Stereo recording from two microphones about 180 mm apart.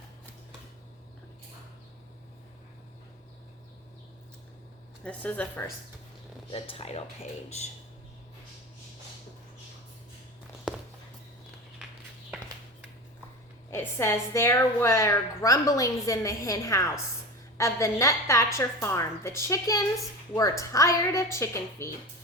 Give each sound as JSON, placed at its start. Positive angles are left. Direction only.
{"t": 5.0, "sound": "a woman's voice", "side_deg": 10}
{"t": 6.5, "sound": "speech", "side_deg": 30}
{"t": 13.7, "sound": "a woman's voice", "side_deg": 15}